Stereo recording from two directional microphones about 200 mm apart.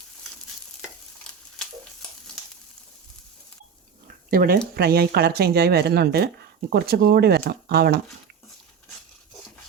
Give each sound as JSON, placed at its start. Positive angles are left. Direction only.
{"t": 4.3, "sound": "speech", "side_deg": -45}